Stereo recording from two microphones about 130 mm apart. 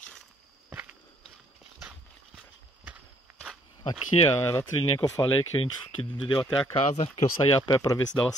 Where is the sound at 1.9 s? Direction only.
10° right (ahead or behind).